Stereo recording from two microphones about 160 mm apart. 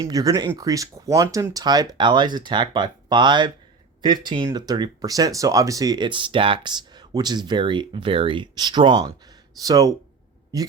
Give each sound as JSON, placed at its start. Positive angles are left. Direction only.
{"t": 0.0, "sound": "speech", "side_deg": -25}